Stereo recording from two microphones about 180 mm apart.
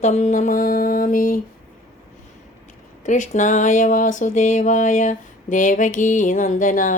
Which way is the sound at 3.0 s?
45° left (ahead or behind).